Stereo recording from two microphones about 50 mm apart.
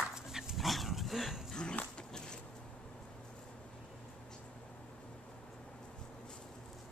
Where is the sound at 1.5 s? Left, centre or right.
Centre.